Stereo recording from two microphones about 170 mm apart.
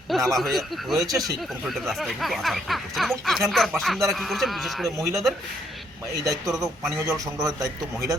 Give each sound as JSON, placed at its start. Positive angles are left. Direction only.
{"t": 0.3, "sound": "speech", "side_deg": 0}
{"t": 6.1, "sound": "speech", "side_deg": -20}
{"t": 6.5, "sound": "speech", "side_deg": 0}
{"t": 6.9, "sound": "a man's voice", "side_deg": -15}